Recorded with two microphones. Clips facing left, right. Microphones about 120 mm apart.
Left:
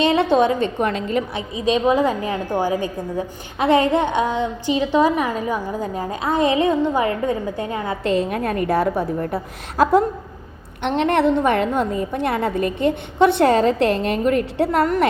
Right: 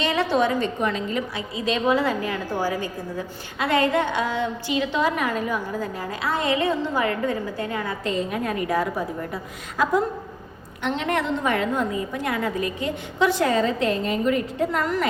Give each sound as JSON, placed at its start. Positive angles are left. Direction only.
{"t": 0.0, "sound": "a woman's voice", "side_deg": 25}
{"t": 0.6, "sound": "a woman's voice", "side_deg": 55}
{"t": 1.4, "sound": "a woman's voice", "side_deg": 20}
{"t": 8.0, "sound": "a woman's voice", "side_deg": 60}